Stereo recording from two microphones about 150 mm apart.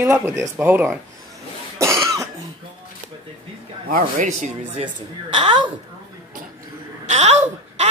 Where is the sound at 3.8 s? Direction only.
65° right (ahead or behind).